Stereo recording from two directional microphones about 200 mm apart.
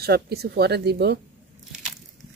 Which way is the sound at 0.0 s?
55° right (ahead or behind).